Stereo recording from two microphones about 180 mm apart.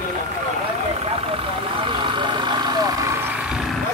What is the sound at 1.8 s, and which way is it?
Vehicle, 25° right (ahead or behind).